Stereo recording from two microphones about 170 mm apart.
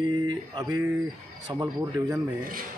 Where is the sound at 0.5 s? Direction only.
25° right (ahead or behind).